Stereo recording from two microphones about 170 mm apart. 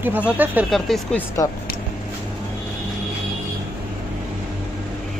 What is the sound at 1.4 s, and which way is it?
Speech, 20° left (ahead or behind).